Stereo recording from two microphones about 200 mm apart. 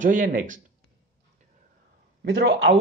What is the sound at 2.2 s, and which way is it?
Speech, 60° right (ahead or behind).